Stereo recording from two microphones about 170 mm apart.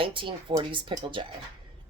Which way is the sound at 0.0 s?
30° right (ahead or behind).